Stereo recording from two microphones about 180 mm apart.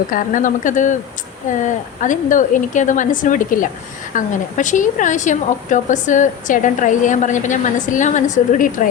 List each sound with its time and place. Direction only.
0.1 s a woman's voice: 50° left (ahead or behind)